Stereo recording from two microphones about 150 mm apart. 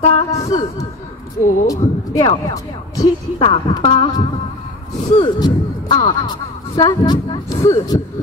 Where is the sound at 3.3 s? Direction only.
35° left (ahead or behind).